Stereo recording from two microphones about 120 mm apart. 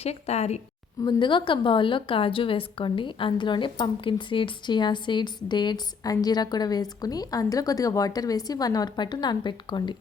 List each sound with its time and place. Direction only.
0.0 s a woman's voice: 60° left (ahead or behind)
1.0 s a woman's voice: 40° left (ahead or behind)